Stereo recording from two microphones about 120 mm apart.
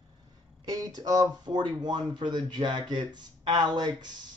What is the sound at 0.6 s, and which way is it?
Speech, 30° right (ahead or behind).